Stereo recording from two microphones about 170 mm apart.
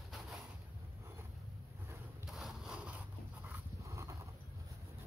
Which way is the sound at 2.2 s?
Centre (ahead or behind).